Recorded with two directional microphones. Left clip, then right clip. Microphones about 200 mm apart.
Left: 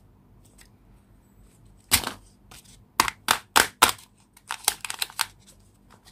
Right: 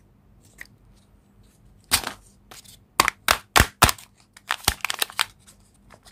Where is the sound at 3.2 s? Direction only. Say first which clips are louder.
Right 2 dB; 20° right (ahead or behind).